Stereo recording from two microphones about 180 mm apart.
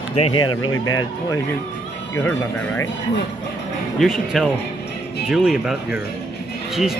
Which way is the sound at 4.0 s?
Centre (ahead or behind).